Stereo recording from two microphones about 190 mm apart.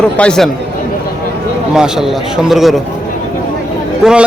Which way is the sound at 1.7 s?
5° right (ahead or behind).